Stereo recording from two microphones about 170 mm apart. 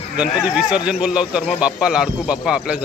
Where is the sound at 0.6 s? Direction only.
5° right (ahead or behind).